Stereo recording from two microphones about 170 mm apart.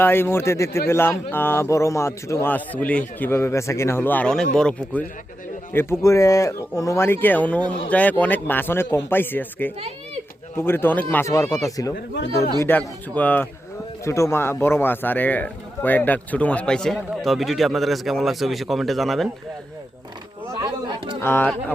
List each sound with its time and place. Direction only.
0.0 s a man's voice: 15° left (ahead or behind)
5.7 s a man's voice: 15° left (ahead or behind)
20.6 s a sound: 25° right (ahead or behind)
21.2 s a man's voice: 10° left (ahead or behind)